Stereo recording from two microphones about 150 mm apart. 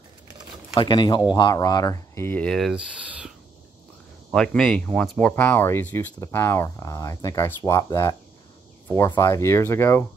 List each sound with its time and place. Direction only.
0.7 s speech: 30° left (ahead or behind); by 2.8 s centre (ahead or behind)
3.1 s a sound: 10° right (ahead or behind)
4.3 s speech: 5° left (ahead or behind)